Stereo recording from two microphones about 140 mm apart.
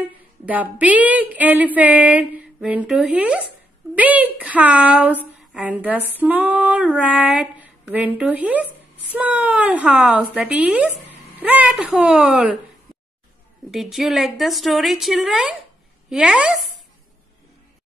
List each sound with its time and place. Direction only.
0.0 s female singing: 10° right (ahead or behind)
13.7 s speech: centre (ahead or behind)